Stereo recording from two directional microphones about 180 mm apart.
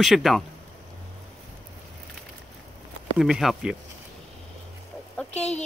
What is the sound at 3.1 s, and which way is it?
Speech, centre (ahead or behind).